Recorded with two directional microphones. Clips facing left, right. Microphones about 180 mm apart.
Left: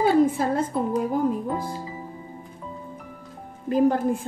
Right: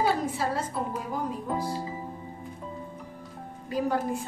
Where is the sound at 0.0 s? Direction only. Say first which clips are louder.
Left 7 dB; 50° left (ahead or behind).